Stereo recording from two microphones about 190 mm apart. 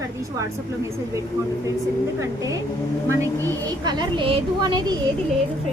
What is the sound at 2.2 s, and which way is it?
A woman's voice, 15° right (ahead or behind).